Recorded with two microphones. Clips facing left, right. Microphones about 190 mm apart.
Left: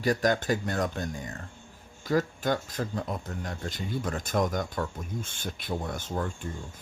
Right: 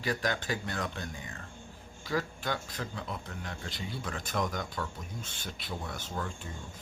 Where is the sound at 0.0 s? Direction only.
45° left (ahead or behind).